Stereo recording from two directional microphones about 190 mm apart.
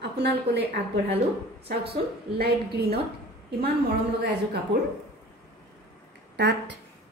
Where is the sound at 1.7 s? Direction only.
55° right (ahead or behind).